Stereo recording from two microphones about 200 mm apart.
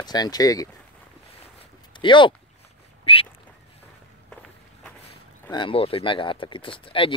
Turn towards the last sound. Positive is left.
turn(degrees=25)  # may be behind; listen again after turning